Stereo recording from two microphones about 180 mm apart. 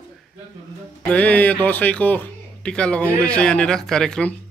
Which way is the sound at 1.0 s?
10° left (ahead or behind).